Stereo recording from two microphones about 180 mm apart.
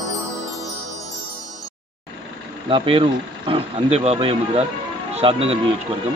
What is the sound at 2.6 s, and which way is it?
Speech, 30° right (ahead or behind).